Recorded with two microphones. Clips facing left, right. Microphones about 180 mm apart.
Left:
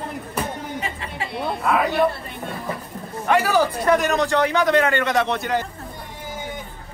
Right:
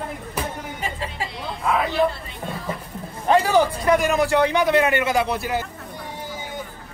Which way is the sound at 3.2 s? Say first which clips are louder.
Right 1 dB; 25° right (ahead or behind).